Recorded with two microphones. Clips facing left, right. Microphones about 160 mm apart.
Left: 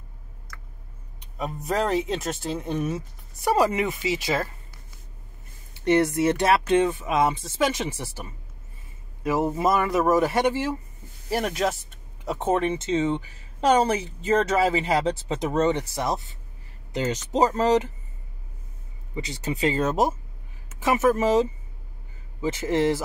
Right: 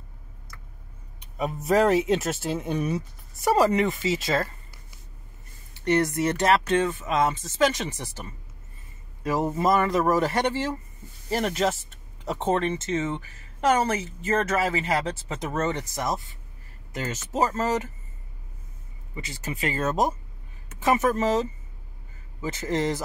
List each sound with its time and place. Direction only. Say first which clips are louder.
1.2 s speech: right 2 dB; centre (ahead or behind)
5.9 s speech: left 3 dB; 10° left (ahead or behind)
9.2 s speech: left 1 dB; 5° left (ahead or behind)
19.4 s speech: left 4 dB; 20° left (ahead or behind)
20.7 s speech: right 1 dB; centre (ahead or behind)
21.0 s speech: left 3 dB; 10° left (ahead or behind)